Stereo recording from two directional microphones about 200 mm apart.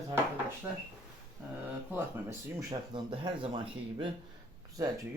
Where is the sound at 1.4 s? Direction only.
5° right (ahead or behind); by 3.6 s 25° right (ahead or behind).